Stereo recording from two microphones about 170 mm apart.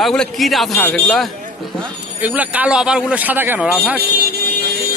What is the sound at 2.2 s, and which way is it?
A man's voice, 10° right (ahead or behind).